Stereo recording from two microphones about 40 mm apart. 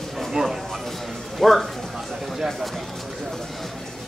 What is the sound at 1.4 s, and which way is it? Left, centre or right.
Speech, centre.